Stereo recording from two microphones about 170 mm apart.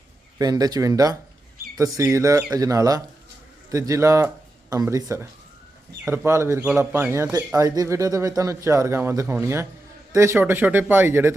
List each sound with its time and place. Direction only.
0.3 s speech: 20° right (ahead or behind)